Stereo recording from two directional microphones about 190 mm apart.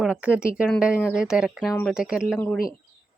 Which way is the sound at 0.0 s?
5° right (ahead or behind).